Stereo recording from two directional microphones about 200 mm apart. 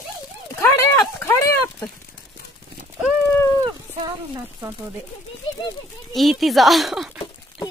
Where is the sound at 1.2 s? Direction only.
15° left (ahead or behind).